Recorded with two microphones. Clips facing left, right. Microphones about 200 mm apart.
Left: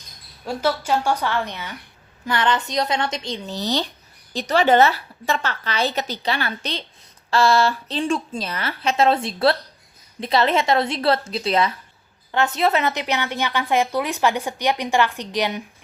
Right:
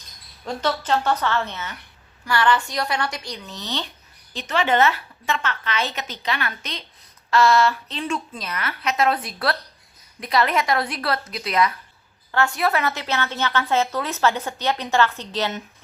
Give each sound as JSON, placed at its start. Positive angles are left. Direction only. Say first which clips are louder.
{"t": 0.4, "sound": "a woman's voice", "louder": "left 2 dB", "side_deg": 10}